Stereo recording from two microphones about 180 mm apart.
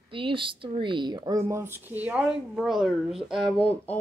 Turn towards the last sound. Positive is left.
turn(degrees=5)  # may be behind; listen again after turning